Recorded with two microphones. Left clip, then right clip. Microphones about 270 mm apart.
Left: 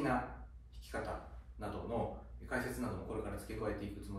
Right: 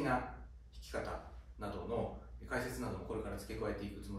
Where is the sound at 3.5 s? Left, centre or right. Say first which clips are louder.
Right 2 dB; centre.